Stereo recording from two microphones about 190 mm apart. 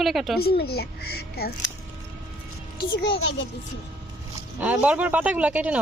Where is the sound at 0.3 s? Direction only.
55° left (ahead or behind).